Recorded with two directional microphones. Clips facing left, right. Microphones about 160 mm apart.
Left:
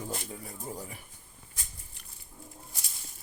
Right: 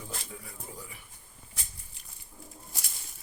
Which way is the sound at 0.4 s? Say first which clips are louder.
Left 5 dB; 40° left (ahead or behind).